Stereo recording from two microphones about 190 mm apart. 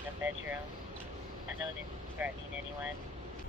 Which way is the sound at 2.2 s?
10° right (ahead or behind).